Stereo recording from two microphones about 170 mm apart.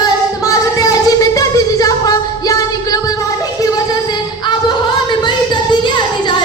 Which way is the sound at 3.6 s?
25° left (ahead or behind).